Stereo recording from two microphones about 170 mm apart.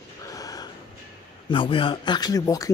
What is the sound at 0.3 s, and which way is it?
Gasp, 20° left (ahead or behind).